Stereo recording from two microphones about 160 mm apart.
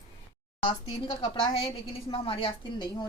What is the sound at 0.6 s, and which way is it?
A woman's voice, 30° left (ahead or behind).